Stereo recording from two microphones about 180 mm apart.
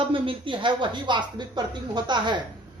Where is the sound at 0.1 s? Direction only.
30° right (ahead or behind).